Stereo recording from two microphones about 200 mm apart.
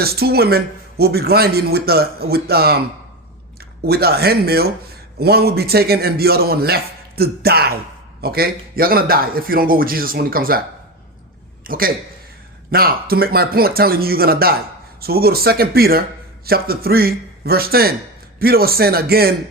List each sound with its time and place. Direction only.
0.0 s a man's voice: 50° right (ahead or behind)
11.6 s a man's voice: 45° right (ahead or behind)